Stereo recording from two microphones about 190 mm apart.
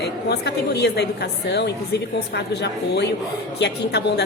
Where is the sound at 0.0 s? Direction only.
60° left (ahead or behind).